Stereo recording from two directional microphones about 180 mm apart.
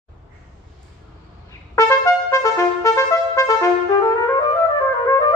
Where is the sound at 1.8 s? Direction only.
20° left (ahead or behind).